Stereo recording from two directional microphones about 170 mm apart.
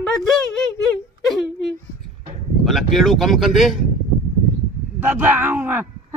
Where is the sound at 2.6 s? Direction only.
Centre (ahead or behind).